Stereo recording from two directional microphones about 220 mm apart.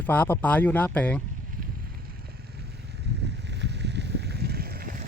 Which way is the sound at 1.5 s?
40° right (ahead or behind).